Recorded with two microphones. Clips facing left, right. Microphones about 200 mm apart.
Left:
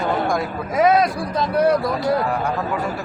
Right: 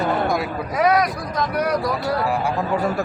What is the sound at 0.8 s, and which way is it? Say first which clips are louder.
Speech: left 3 dB; 25° left (ahead or behind).